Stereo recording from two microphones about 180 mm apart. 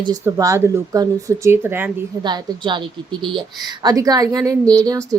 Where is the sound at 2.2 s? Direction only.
25° right (ahead or behind).